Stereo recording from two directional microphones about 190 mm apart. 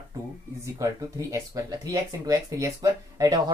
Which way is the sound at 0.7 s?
15° right (ahead or behind).